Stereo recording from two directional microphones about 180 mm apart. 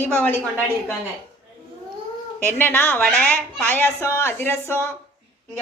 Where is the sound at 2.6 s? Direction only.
10° left (ahead or behind).